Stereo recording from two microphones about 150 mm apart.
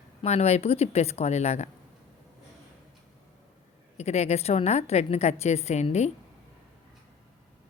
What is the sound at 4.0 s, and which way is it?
Speech, 45° left (ahead or behind).